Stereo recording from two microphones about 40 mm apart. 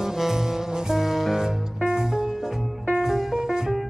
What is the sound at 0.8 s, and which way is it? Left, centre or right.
Music, centre.